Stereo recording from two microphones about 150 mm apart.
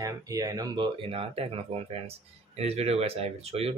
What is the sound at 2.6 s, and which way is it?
Speech, 45° right (ahead or behind).